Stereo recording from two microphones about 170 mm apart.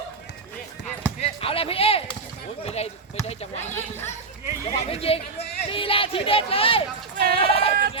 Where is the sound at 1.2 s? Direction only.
35° left (ahead or behind).